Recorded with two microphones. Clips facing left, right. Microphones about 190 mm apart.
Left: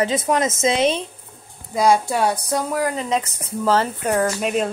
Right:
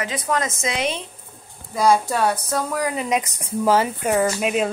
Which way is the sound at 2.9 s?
15° right (ahead or behind).